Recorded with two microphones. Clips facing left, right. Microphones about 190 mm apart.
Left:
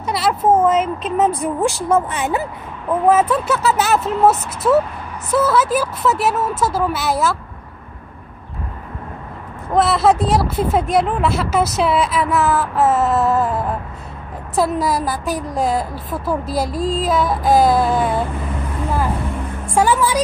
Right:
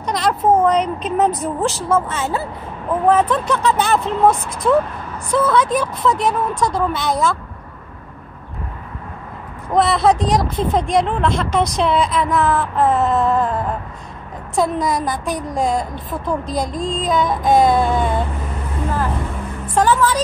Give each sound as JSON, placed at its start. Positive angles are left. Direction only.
{"t": 0.0, "sound": "a sound", "side_deg": 5}
{"t": 0.5, "sound": "a woman's voice", "side_deg": 5}
{"t": 1.3, "sound": "a woman's voice", "side_deg": 10}
{"t": 9.7, "sound": "a woman's voice", "side_deg": 0}
{"t": 19.7, "sound": "speech", "side_deg": 10}